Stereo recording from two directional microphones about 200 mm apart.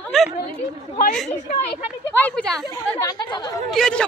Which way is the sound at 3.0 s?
20° left (ahead or behind).